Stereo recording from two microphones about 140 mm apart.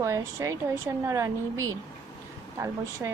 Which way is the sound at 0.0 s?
20° right (ahead or behind).